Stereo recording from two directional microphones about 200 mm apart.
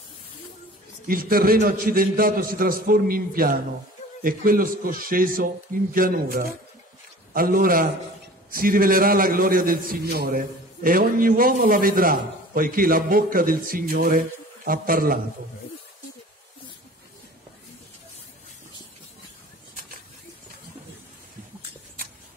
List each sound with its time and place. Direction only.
1.0 s a man's voice: 45° right (ahead or behind)